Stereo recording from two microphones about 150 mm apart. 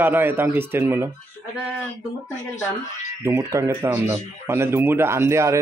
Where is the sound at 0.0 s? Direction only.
15° right (ahead or behind).